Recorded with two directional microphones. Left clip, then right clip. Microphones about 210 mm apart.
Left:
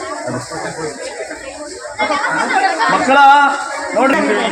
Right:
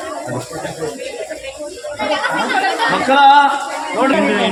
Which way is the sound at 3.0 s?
40° left (ahead or behind).